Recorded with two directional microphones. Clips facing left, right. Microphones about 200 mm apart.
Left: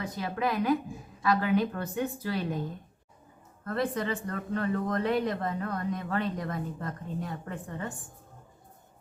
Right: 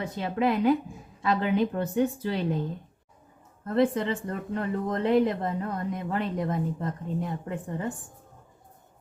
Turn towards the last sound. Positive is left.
turn(degrees=-20)  # may be behind; listen again after turning